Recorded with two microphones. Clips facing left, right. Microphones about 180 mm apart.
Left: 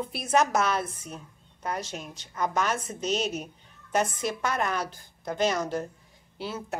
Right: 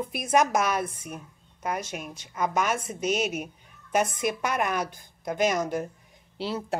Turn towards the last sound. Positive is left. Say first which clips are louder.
# right 4 dB
turn(degrees=-30)  # may be behind; listen again after turning